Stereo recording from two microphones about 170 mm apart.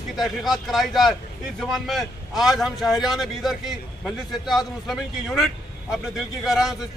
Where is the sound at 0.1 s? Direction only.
Centre (ahead or behind).